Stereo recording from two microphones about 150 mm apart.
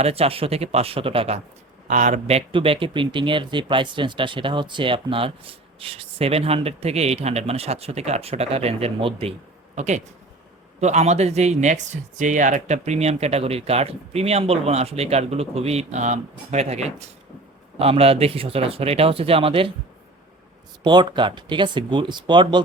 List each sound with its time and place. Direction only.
0.0 s speech: 40° right (ahead or behind)
1.9 s speech: 55° right (ahead or behind)
9.7 s speech: 50° right (ahead or behind)
20.8 s speech: 30° right (ahead or behind)